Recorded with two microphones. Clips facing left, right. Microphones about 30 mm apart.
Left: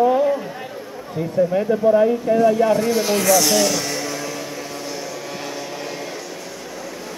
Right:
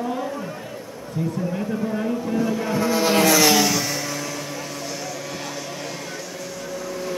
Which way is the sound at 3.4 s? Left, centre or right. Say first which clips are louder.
Even; centre.